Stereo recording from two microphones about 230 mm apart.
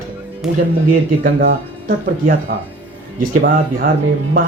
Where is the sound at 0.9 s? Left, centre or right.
Right.